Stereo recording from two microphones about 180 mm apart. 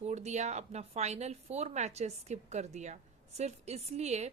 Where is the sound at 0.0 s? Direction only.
40° right (ahead or behind).